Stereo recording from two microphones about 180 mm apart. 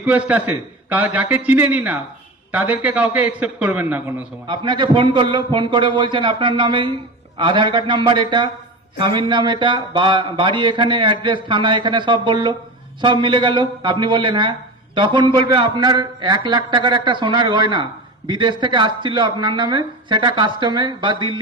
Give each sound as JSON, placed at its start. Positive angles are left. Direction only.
{"t": 0.0, "sound": "a man's voice", "side_deg": -10}
{"t": 4.4, "sound": "speech", "side_deg": -25}